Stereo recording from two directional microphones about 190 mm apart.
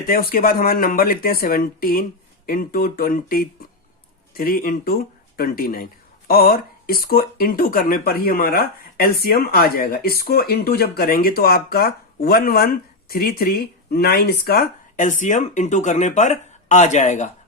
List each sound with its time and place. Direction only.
0.0 s speech: 50° left (ahead or behind)